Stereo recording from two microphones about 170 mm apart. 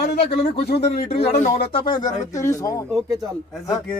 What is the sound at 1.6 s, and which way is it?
Speech, 30° left (ahead or behind).